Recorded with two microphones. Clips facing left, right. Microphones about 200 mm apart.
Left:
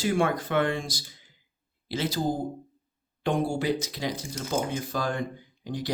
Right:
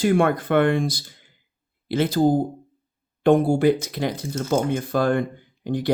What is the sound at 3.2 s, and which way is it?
Speech, 55° right (ahead or behind).